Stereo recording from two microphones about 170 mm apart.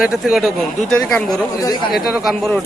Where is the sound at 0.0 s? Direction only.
Centre (ahead or behind).